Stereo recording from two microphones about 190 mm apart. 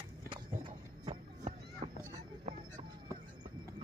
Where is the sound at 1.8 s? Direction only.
35° right (ahead or behind).